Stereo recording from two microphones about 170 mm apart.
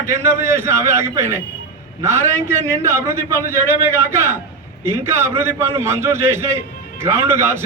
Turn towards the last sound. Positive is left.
turn(degrees=-15)  # may be behind; listen again after turning